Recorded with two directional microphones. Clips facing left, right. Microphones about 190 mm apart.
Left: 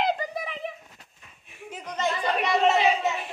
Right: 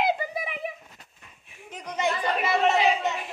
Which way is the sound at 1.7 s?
5° left (ahead or behind).